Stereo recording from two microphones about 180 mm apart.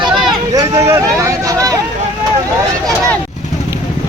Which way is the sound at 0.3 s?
20° right (ahead or behind).